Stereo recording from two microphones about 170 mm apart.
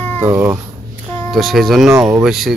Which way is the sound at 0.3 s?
15° right (ahead or behind).